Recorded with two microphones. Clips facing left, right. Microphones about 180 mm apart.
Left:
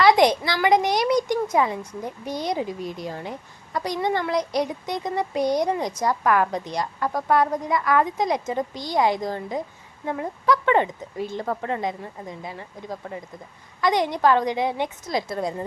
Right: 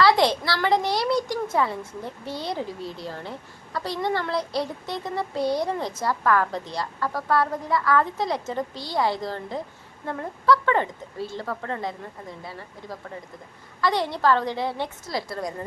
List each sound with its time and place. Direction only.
0.0 s a child's voice: 15° left (ahead or behind)